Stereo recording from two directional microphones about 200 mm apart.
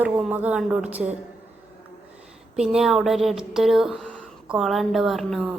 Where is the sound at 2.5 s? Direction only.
5° right (ahead or behind).